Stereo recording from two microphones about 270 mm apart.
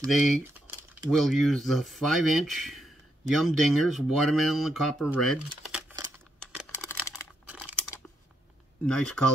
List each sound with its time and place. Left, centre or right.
0.1 s speech: centre
6.7 s computer keyboard: centre
7.4 s crumpling: centre
8.8 s speech: centre